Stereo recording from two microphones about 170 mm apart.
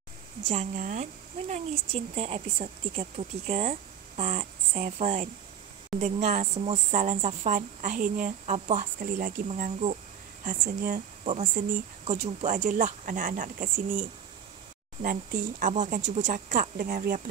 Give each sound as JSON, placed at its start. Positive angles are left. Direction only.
{"t": 0.5, "sound": "speech", "side_deg": -45}
{"t": 9.6, "sound": "speech", "side_deg": -40}
{"t": 10.4, "sound": "speech", "side_deg": -50}
{"t": 11.2, "sound": "speech", "side_deg": -45}